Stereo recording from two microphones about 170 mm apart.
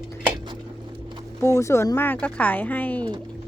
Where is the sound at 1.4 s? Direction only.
15° left (ahead or behind).